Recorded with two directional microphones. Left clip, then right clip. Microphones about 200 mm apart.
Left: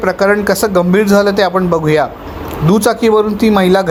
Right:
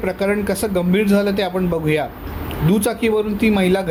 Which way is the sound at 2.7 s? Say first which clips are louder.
Left 8 dB; 15° left (ahead or behind).